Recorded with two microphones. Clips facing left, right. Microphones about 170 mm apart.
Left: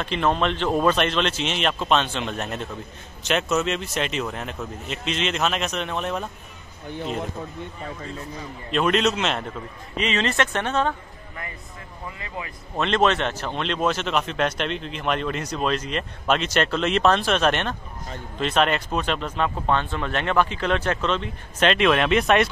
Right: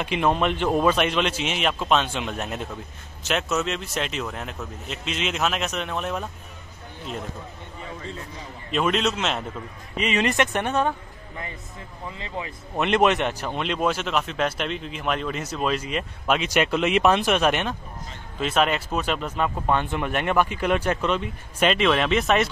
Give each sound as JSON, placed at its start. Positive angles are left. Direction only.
{"t": 0.0, "sound": "speech", "side_deg": -10}
{"t": 8.7, "sound": "speech", "side_deg": 0}
{"t": 9.9, "sound": "speech", "side_deg": -10}
{"t": 12.2, "sound": "speech", "side_deg": -25}